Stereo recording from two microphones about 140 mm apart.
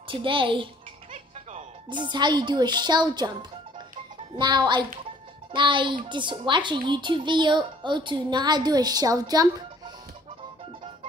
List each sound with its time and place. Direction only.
0.1 s speech: 35° right (ahead or behind)
1.9 s speech: 35° right (ahead or behind)
4.4 s speech: 30° right (ahead or behind)